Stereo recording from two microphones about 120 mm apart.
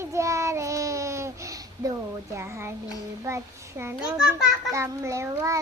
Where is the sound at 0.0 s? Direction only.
25° right (ahead or behind).